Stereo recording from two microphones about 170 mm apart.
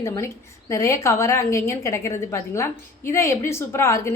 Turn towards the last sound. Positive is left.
turn(degrees=15)  # may be behind; listen again after turning